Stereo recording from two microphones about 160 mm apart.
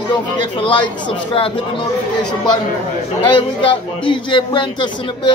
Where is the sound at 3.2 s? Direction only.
30° left (ahead or behind).